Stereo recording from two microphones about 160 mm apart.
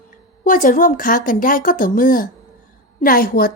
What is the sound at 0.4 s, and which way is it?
A woman's voice, 60° left (ahead or behind).